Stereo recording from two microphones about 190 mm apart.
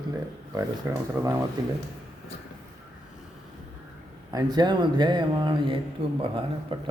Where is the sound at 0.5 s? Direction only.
15° right (ahead or behind).